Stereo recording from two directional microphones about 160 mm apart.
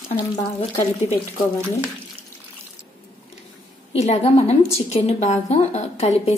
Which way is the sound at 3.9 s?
40° left (ahead or behind).